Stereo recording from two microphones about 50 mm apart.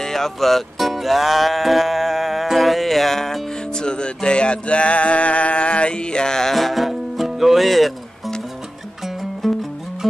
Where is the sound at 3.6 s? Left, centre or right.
Centre.